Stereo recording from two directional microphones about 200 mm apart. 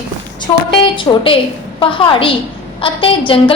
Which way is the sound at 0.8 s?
25° left (ahead or behind).